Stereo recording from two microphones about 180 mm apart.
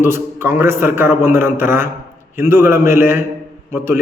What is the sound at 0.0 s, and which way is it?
A man's voice, 10° right (ahead or behind).